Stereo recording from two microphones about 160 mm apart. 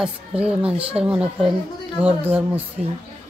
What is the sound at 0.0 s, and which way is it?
A woman's voice, 5° right (ahead or behind).